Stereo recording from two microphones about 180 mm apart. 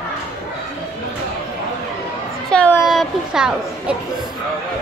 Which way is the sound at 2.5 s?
5° left (ahead or behind).